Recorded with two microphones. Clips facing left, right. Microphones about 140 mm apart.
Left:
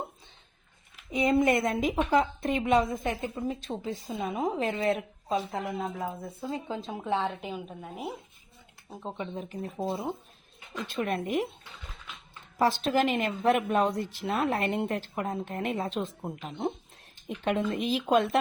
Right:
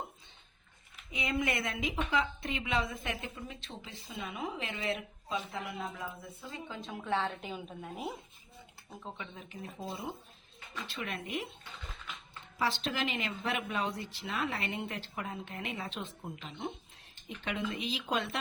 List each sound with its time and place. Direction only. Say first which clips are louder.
1.1 s a woman's voice: left 10 dB; 45° left (ahead or behind)
7.2 s a woman's voice: left 4 dB; 15° left (ahead or behind)
9.0 s a woman's voice: left 10 dB; 35° left (ahead or behind)
10.8 s a woman's voice: left 11 dB; 45° left (ahead or behind)
12.5 s a woman's voice: left 8 dB; 45° left (ahead or behind)